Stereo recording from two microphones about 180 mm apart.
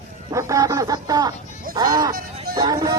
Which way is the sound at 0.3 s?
20° right (ahead or behind).